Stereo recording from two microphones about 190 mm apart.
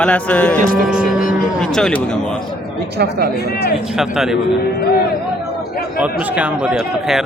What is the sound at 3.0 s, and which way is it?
Speech, 55° right (ahead or behind).